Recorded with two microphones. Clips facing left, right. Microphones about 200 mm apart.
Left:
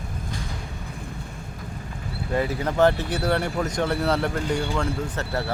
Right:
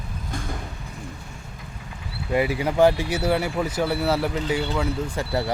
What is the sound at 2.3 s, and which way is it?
Speech, 10° right (ahead or behind).